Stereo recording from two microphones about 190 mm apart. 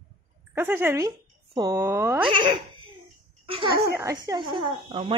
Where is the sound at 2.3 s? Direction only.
25° right (ahead or behind).